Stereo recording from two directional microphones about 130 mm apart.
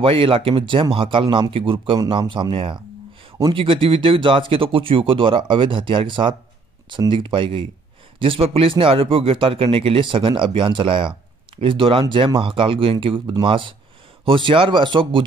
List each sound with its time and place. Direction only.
0.0 s speech: 45° right (ahead or behind)